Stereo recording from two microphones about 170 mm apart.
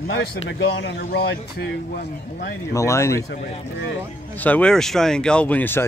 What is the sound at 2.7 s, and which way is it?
Speech, 15° left (ahead or behind).